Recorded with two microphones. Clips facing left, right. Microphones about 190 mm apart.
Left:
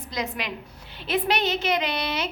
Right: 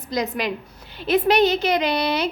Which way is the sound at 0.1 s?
40° right (ahead or behind).